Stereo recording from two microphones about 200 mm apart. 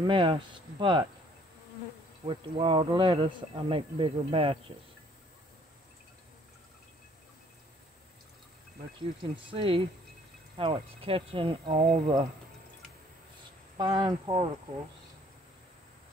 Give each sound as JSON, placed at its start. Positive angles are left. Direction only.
{"t": 0.0, "sound": "speech", "side_deg": -25}
{"t": 2.2, "sound": "speech", "side_deg": -25}
{"t": 9.2, "sound": "speech", "side_deg": -25}
{"t": 13.7, "sound": "speech", "side_deg": -20}